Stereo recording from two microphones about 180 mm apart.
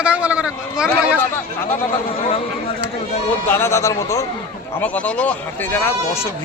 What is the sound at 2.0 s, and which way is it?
Speech, 35° left (ahead or behind).